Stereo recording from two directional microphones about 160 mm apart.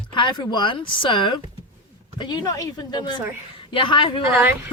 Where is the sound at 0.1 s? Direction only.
30° left (ahead or behind).